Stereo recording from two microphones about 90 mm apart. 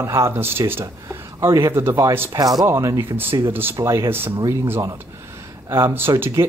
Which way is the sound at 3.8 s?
35° right (ahead or behind).